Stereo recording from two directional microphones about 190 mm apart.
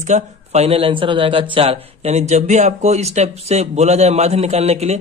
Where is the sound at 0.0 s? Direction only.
35° right (ahead or behind).